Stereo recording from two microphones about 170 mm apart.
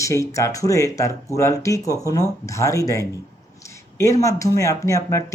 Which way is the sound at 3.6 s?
15° left (ahead or behind).